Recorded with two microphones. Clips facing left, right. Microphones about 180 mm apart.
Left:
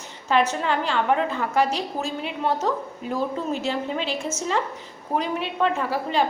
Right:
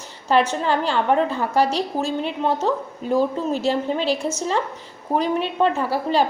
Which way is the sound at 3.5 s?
35° right (ahead or behind).